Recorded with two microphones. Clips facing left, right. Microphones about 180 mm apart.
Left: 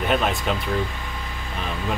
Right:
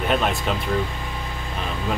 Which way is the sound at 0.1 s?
Centre (ahead or behind).